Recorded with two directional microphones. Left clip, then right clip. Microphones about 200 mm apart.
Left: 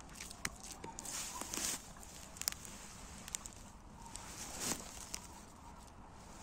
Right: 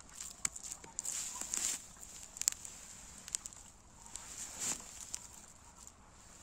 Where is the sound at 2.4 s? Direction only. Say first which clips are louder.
Right 4 dB; 20° left (ahead or behind).